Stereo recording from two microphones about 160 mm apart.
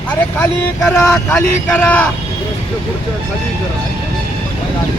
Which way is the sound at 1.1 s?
5° left (ahead or behind).